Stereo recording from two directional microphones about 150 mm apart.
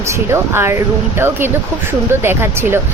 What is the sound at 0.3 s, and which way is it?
Speech, 15° right (ahead or behind).